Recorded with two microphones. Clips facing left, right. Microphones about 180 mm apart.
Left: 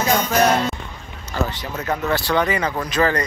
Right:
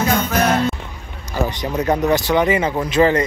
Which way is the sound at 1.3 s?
15° right (ahead or behind).